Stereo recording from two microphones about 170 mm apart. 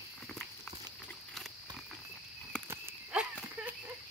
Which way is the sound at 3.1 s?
5° right (ahead or behind).